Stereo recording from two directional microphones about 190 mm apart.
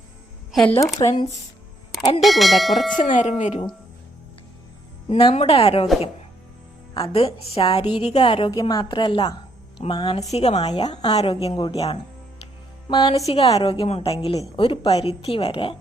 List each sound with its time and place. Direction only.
0.5 s speech: 5° left (ahead or behind)
0.9 s a woman's voice: 20° left (ahead or behind)
2.2 s speech: centre (ahead or behind)
3.2 s a woman's voice: 40° left (ahead or behind)
5.0 s a woman's voice: 30° left (ahead or behind)
7.1 s a woman's voice: 30° left (ahead or behind)
10.6 s a woman's voice: 20° left (ahead or behind)
11.2 s a woman's voice: 30° left (ahead or behind)